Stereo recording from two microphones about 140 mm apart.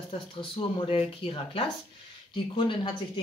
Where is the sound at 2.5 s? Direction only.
35° left (ahead or behind).